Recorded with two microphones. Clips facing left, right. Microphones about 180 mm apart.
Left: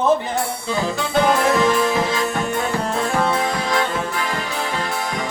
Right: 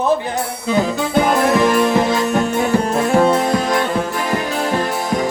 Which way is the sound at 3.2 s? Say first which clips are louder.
Right 8 dB; 40° right (ahead or behind).